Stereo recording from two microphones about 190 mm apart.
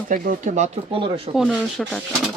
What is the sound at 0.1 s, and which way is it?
Speech, 45° right (ahead or behind).